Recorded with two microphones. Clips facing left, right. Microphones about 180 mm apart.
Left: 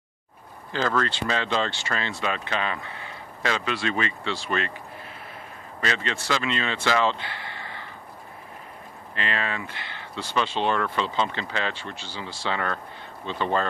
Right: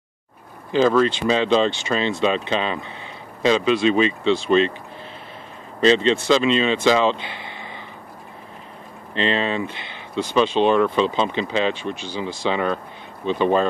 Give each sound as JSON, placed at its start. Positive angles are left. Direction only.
{"t": 0.7, "sound": "speech", "side_deg": -15}
{"t": 5.8, "sound": "speech", "side_deg": -20}
{"t": 9.1, "sound": "speech", "side_deg": -25}